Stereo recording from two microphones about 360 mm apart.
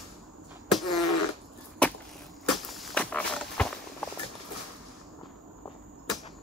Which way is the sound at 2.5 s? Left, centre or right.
Centre.